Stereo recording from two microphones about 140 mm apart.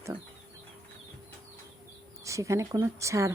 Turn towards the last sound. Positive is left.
turn(degrees=-20)  # may be behind; listen again after turning